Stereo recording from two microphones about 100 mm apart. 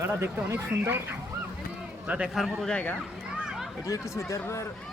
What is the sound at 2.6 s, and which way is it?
Speech, 10° left (ahead or behind).